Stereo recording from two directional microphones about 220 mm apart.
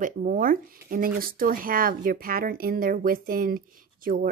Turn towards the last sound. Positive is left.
turn(degrees=-40)  # may be behind; listen again after turning